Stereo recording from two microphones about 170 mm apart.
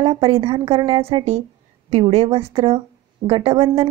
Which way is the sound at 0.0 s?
35° right (ahead or behind).